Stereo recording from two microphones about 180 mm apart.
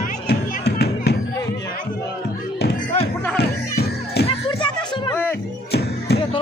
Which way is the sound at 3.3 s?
65° left (ahead or behind).